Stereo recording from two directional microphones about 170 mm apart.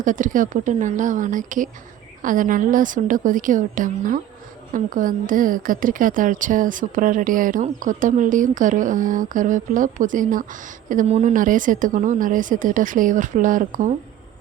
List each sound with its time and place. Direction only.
0.0 s a woman's voice: 50° right (ahead or behind)